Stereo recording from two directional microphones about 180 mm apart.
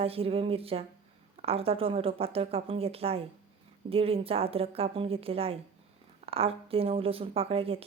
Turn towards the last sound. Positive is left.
turn(degrees=-30)  # may be behind; listen again after turning